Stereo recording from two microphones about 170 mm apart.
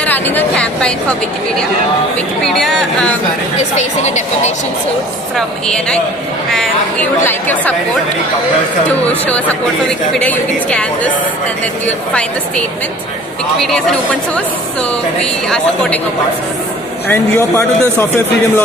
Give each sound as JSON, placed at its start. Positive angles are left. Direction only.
{"t": 0.0, "sound": "speech", "side_deg": 10}
{"t": 2.4, "sound": "speech", "side_deg": 0}
{"t": 3.7, "sound": "a woman's voice", "side_deg": 40}
{"t": 7.2, "sound": "speech", "side_deg": 10}
{"t": 9.2, "sound": "speech", "side_deg": 10}
{"t": 12.1, "sound": "speech", "side_deg": 5}
{"t": 17.1, "sound": "speech", "side_deg": 15}